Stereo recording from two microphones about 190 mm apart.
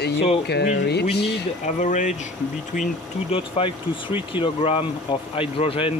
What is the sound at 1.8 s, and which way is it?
Speech, 40° left (ahead or behind).